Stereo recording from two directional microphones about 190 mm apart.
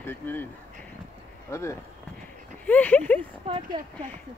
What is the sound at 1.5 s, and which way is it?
Speech, 15° left (ahead or behind).